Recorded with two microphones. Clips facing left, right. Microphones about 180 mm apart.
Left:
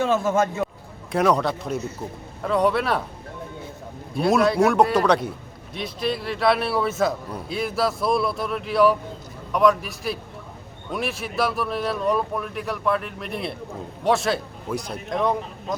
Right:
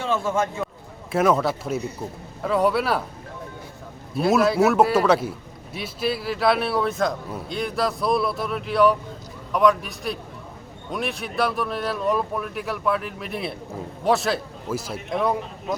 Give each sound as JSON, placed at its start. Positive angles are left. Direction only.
{"t": 0.0, "sound": "a man's voice", "side_deg": 45}
{"t": 1.1, "sound": "a man's voice", "side_deg": -5}
{"t": 4.1, "sound": "a man's voice", "side_deg": 0}